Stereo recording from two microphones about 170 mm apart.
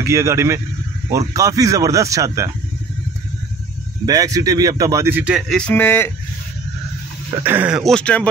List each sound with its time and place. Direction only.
0.0 s speech: 15° right (ahead or behind)
4.0 s speech: 20° right (ahead or behind)
5.6 s speech: 10° left (ahead or behind)
7.4 s speech: 10° right (ahead or behind); by 8.3 s 5° left (ahead or behind)